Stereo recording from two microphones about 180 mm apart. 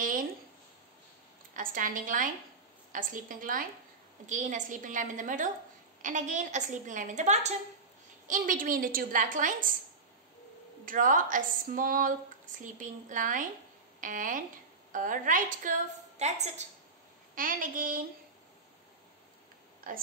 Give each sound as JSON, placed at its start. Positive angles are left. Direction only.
{"t": 1.5, "sound": "a woman's voice", "side_deg": -50}
{"t": 10.9, "sound": "a woman's voice", "side_deg": -50}
{"t": 17.4, "sound": "a woman's voice", "side_deg": -50}
{"t": 19.9, "sound": "a woman's voice", "side_deg": -50}